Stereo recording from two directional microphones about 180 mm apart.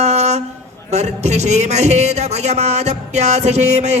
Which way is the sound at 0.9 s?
40° right (ahead or behind).